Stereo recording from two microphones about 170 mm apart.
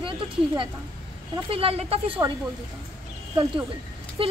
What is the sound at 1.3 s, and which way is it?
Speech, 35° right (ahead or behind).